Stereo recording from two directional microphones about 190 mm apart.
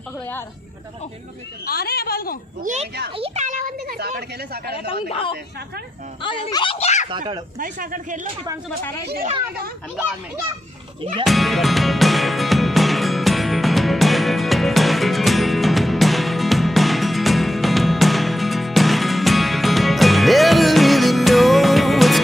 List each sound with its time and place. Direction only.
1.7 s a woman's voice: 55° left (ahead or behind)
2.6 s a child's voice: 40° right (ahead or behind)
6.2 s speech: 25° left (ahead or behind)
7.1 s speech: 25° right (ahead or behind)
7.5 s speech: 45° right (ahead or behind)
11.2 s music: centre (ahead or behind)